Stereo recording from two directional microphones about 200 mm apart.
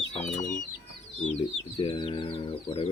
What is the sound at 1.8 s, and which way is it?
Speech, 25° left (ahead or behind).